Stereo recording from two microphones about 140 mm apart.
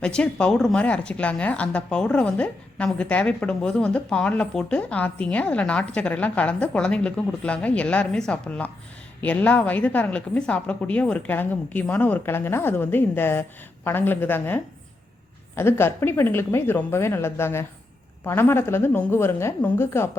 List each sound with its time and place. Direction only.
0.0 s a woman's voice: 5° left (ahead or behind)